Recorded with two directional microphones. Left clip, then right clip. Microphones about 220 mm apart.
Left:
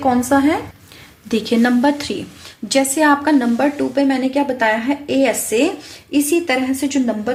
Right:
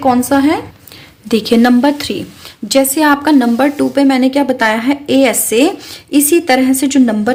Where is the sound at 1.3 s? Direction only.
30° right (ahead or behind).